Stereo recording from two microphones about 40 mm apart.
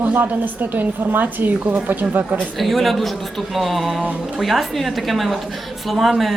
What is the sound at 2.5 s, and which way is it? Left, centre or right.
Speech, centre.